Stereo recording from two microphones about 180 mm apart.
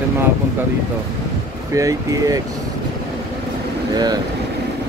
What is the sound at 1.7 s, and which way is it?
Speech, 20° right (ahead or behind).